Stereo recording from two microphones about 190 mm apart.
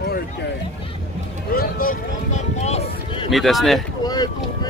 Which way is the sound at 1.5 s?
50° left (ahead or behind).